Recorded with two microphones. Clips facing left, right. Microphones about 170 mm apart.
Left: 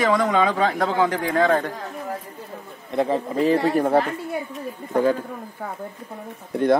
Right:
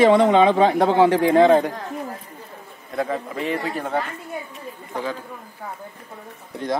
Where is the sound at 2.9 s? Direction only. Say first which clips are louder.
Left 3 dB; 25° left (ahead or behind).